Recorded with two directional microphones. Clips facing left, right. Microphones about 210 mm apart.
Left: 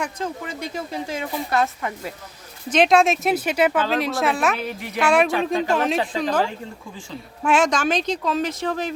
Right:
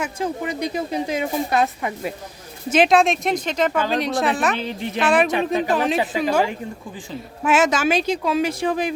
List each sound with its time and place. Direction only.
0.0 s speech: 15° right (ahead or behind)
2.6 s speech: 5° right (ahead or behind)
4.5 s a woman's voice: 25° right (ahead or behind)
4.9 s speech: centre (ahead or behind)
7.4 s speech: 5° right (ahead or behind)